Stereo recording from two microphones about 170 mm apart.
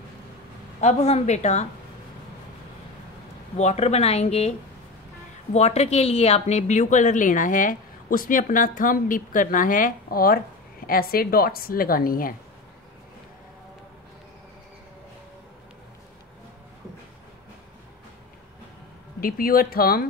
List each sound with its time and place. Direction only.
0.7 s speech: 40° left (ahead or behind)
3.5 s a woman's voice: 40° left (ahead or behind); by 12.4 s 60° left (ahead or behind)
19.2 s a woman's voice: 60° left (ahead or behind)